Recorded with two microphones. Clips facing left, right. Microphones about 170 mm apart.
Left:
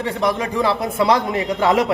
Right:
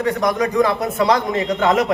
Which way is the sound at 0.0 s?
30° left (ahead or behind).